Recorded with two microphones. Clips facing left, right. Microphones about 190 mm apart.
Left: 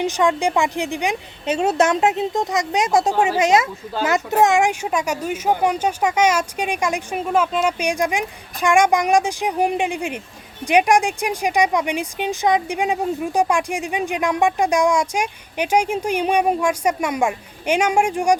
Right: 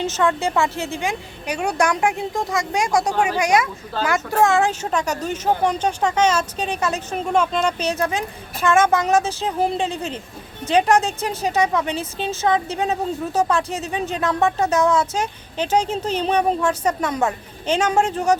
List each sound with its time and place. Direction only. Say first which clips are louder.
0.0 s a woman's voice: left 2 dB; 15° left (ahead or behind)